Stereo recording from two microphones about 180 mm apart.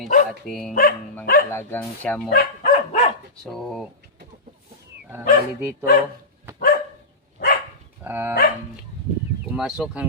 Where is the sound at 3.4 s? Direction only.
Centre (ahead or behind).